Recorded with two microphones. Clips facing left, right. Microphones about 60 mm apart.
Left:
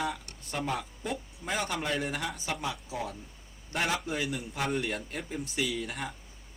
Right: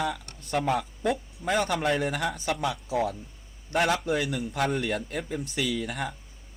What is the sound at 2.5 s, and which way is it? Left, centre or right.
Speech, right.